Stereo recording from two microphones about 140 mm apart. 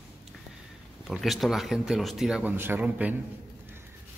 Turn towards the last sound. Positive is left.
turn(degrees=-10)  # may be behind; listen again after turning